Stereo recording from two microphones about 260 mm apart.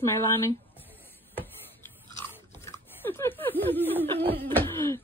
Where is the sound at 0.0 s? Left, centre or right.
Centre.